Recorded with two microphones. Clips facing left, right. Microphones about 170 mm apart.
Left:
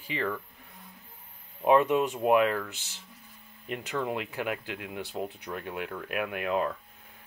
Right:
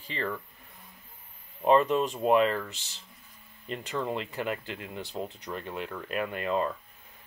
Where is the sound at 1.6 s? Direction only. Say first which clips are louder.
Even; 5° left (ahead or behind).